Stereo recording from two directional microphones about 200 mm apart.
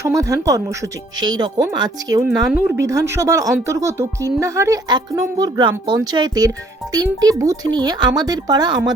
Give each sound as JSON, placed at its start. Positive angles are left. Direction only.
{"t": 0.0, "sound": "speech", "side_deg": -15}
{"t": 2.2, "sound": "speech", "side_deg": -5}